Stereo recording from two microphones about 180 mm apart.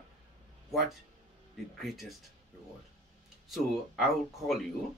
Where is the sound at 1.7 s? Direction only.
Centre (ahead or behind).